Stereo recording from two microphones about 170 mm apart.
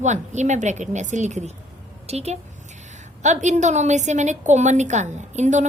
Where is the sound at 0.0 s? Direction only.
45° right (ahead or behind).